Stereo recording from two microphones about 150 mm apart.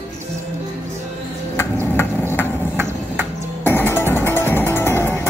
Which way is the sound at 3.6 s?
15° left (ahead or behind).